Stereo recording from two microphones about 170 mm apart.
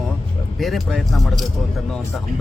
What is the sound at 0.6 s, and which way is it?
Speech, centre (ahead or behind).